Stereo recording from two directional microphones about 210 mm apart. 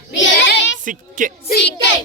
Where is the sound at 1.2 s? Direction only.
40° right (ahead or behind).